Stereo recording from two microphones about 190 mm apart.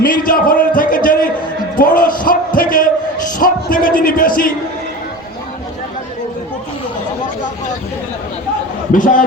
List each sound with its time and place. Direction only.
0.0 s speech: 45° left (ahead or behind)
0.8 s a sound: 45° left (ahead or behind)
3.3 s music: 45° left (ahead or behind)
8.9 s a man's voice: 45° left (ahead or behind)